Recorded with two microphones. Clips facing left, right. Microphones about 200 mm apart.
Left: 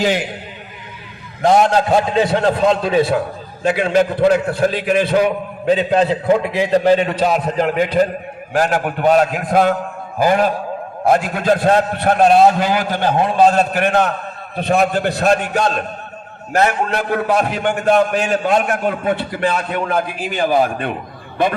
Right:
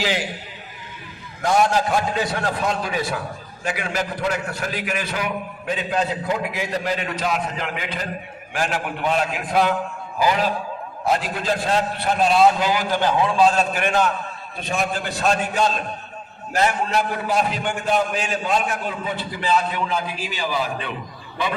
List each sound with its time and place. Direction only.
1.9 s a man's voice: 25° left (ahead or behind); by 20.9 s 55° left (ahead or behind)